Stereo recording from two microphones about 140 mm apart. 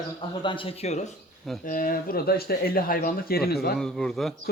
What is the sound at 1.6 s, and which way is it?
Speech, 75° left (ahead or behind).